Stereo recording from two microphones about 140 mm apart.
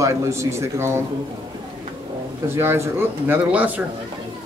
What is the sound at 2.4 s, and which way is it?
A man's voice, 20° right (ahead or behind).